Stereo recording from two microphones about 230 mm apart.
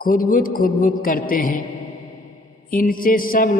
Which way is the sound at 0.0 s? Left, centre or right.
Left.